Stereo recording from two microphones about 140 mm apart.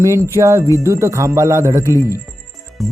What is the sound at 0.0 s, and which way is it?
Speech, 20° right (ahead or behind).